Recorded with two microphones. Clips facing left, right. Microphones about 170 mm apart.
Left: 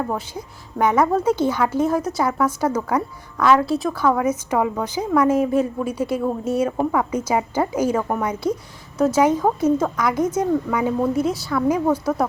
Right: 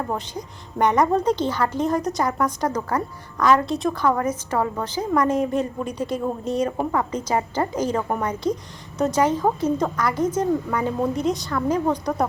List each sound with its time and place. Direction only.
0.1 s a woman's voice: 5° left (ahead or behind)